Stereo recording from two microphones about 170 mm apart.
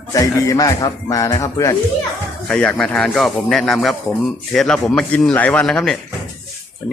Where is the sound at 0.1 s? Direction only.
20° left (ahead or behind).